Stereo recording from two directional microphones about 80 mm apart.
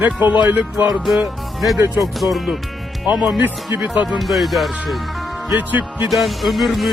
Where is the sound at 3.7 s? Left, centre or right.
Right.